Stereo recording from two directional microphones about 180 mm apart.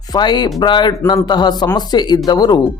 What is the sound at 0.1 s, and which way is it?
Speech, 25° left (ahead or behind).